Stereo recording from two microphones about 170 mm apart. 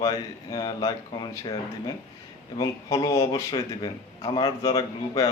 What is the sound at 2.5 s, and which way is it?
Speech, 20° left (ahead or behind).